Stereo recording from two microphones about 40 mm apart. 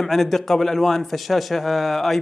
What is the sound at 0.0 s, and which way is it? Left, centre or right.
Speech, centre.